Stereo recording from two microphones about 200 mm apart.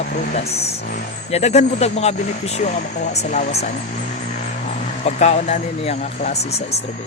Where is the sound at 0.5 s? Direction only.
30° left (ahead or behind).